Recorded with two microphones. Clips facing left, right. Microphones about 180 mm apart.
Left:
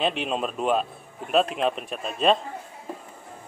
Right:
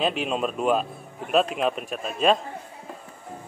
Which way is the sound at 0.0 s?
Centre (ahead or behind).